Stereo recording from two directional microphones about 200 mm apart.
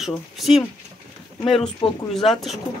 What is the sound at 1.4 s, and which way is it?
Speech, 25° left (ahead or behind).